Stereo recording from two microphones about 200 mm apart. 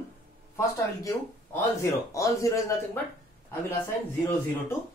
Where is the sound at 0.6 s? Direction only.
15° left (ahead or behind).